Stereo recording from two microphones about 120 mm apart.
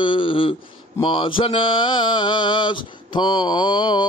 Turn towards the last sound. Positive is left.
turn(degrees=40)  # may be behind; listen again after turning